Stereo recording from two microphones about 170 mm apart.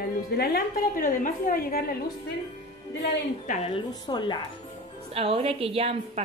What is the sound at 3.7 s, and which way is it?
Speech, 25° left (ahead or behind).